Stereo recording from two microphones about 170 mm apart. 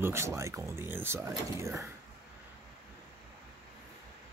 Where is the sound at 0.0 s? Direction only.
15° right (ahead or behind).